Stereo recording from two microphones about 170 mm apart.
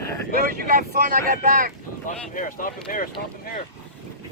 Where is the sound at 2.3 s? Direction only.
50° left (ahead or behind).